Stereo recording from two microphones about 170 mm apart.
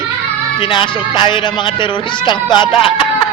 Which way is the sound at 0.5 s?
30° left (ahead or behind).